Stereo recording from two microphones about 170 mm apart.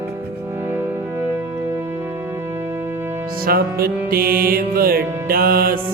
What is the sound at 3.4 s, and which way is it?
Music, 60° right (ahead or behind).